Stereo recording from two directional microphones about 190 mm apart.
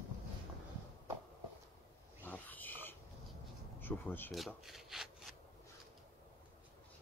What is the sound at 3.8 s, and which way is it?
Speech, 10° left (ahead or behind).